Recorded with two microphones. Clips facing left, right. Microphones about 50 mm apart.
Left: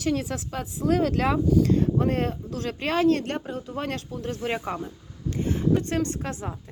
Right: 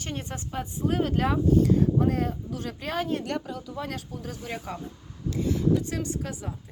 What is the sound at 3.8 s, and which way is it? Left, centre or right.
Speech, left.